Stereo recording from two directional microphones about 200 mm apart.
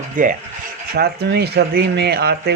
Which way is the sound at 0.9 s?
55° right (ahead or behind).